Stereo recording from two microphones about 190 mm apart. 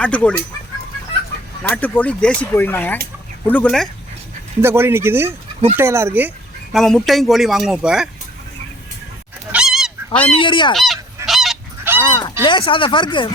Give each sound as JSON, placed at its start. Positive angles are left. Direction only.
{"t": 0.0, "sound": "speech", "side_deg": 5}
{"t": 1.7, "sound": "speech", "side_deg": 10}
{"t": 4.6, "sound": "speech", "side_deg": -10}
{"t": 6.7, "sound": "speech", "side_deg": 0}
{"t": 9.5, "sound": "goose", "side_deg": -5}
{"t": 10.2, "sound": "speech", "side_deg": 25}
{"t": 10.8, "sound": "goose", "side_deg": 0}
{"t": 11.9, "sound": "speech", "side_deg": 25}